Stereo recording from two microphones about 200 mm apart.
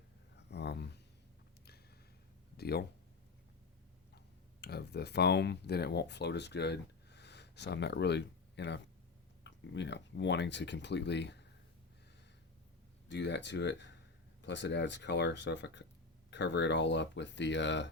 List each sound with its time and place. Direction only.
0.3 s a sound: 55° left (ahead or behind)
2.6 s speech: 50° left (ahead or behind)
4.6 s speech: 55° left (ahead or behind)
13.1 s speech: 60° left (ahead or behind)